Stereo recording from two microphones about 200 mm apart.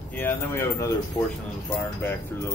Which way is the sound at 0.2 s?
15° left (ahead or behind).